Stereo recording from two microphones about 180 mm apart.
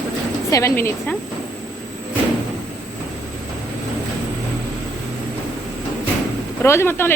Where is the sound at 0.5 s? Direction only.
15° left (ahead or behind).